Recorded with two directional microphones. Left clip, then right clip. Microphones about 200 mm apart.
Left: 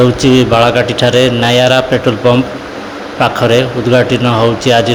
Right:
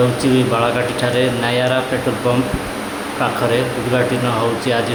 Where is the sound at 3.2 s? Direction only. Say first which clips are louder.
Left 8 dB; 35° left (ahead or behind).